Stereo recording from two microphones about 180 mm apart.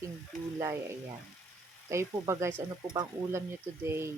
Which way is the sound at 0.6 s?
15° right (ahead or behind).